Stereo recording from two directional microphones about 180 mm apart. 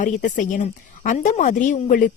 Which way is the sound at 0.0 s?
45° left (ahead or behind).